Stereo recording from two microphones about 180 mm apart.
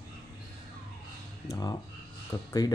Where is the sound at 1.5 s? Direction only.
20° left (ahead or behind).